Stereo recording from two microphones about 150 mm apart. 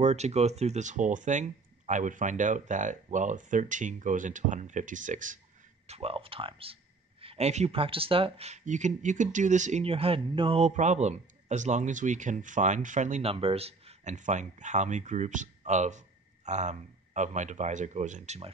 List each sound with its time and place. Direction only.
0.0 s speech: 50° right (ahead or behind)
5.9 s speech: 40° right (ahead or behind)
13.3 s speech: 40° right (ahead or behind)